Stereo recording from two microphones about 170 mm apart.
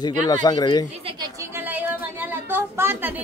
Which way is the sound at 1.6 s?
10° right (ahead or behind).